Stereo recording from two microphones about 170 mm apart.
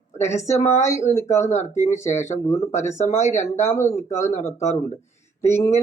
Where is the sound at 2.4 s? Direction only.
20° left (ahead or behind).